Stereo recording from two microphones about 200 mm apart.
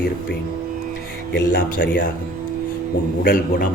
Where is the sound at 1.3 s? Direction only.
50° left (ahead or behind).